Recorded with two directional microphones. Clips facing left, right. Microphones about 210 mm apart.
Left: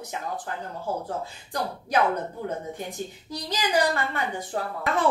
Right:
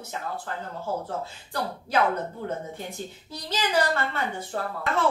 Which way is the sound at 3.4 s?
15° left (ahead or behind).